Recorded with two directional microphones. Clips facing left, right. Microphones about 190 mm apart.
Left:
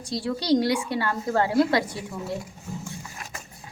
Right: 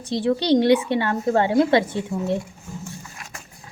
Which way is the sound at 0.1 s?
25° right (ahead or behind).